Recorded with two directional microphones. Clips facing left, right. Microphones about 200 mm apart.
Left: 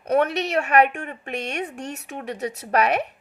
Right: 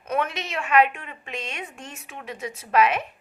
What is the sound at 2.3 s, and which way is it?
Music, 65° left (ahead or behind).